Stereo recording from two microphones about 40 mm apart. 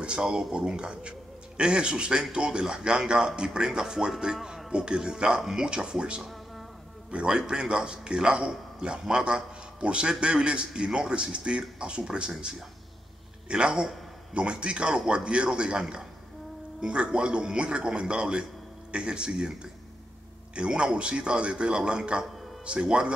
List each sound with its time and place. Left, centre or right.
0.0 s a man's voice: right
7.2 s a man's voice: right